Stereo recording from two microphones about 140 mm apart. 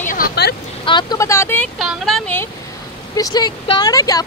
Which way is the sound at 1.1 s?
20° left (ahead or behind).